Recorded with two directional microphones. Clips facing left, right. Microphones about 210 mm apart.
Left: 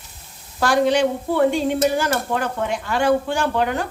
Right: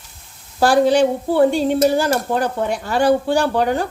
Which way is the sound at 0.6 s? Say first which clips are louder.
Right 4 dB; 35° right (ahead or behind).